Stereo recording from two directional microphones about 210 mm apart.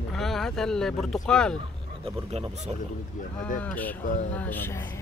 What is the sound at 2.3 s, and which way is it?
Speech, 30° right (ahead or behind).